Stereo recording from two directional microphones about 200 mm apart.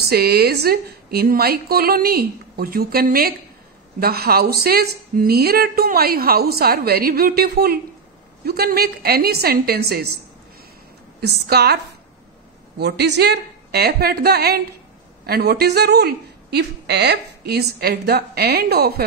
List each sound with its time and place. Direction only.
0.0 s a woman's voice: 50° right (ahead or behind)
11.1 s a woman's voice: 50° right (ahead or behind)